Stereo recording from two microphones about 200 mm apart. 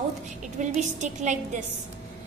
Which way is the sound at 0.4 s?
35° right (ahead or behind).